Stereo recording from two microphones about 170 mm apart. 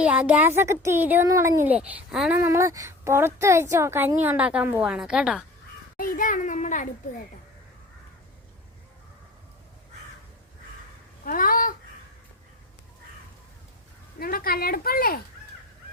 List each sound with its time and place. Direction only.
0.0 s speech: 10° right (ahead or behind)
6.0 s a child's voice: 55° left (ahead or behind)
11.3 s a child's voice: 55° left (ahead or behind)
14.2 s speech: 60° left (ahead or behind)